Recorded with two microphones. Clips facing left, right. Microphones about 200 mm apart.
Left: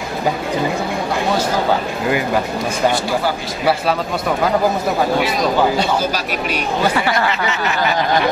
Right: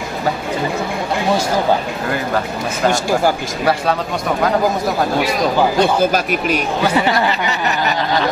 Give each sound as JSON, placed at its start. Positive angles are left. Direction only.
{"t": 5.8, "sound": "speech", "side_deg": -55}